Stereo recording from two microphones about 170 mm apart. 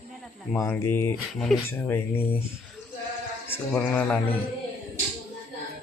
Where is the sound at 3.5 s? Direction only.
10° left (ahead or behind).